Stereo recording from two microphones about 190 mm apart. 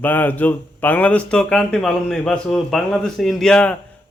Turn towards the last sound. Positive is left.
turn(degrees=5)  # may be behind; listen again after turning